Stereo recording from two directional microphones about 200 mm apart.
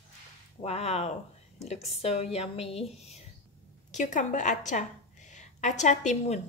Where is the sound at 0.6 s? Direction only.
30° left (ahead or behind).